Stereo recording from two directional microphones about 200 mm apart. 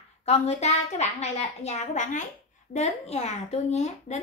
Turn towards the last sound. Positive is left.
turn(degrees=35)  # may be behind; listen again after turning